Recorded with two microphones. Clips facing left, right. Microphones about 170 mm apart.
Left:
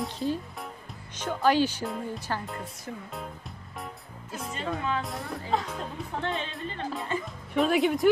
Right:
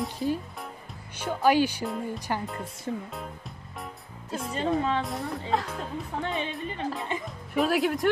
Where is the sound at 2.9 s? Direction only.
25° right (ahead or behind).